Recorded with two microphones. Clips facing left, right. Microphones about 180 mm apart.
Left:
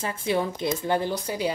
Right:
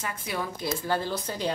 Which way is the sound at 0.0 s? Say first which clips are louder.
Left 7 dB; 25° left (ahead or behind).